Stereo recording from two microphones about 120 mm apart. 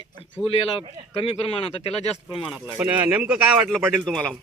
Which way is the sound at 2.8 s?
15° right (ahead or behind).